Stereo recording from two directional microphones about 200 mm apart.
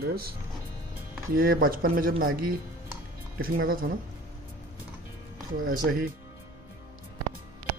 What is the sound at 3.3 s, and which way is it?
Speech, 45° right (ahead or behind).